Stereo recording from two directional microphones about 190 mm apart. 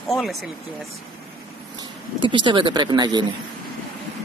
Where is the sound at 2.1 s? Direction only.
25° right (ahead or behind).